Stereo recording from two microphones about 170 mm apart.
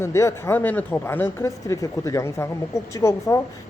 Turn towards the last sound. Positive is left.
turn(degrees=15)  # may be behind; listen again after turning